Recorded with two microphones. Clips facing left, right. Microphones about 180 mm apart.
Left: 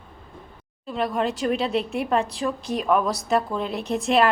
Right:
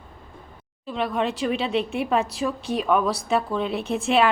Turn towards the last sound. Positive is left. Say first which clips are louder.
# even
turn(degrees=0)  # may be behind; listen again after turning